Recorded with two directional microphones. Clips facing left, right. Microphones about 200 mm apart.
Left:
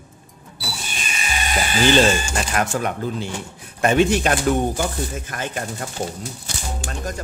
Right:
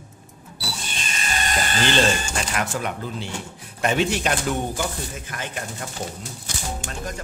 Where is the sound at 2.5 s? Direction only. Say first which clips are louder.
Left 6 dB; 45° left (ahead or behind).